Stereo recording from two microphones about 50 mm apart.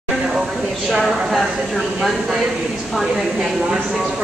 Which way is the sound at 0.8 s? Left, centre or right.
Centre.